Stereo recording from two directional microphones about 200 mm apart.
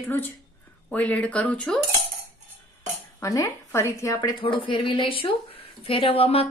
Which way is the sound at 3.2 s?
15° left (ahead or behind).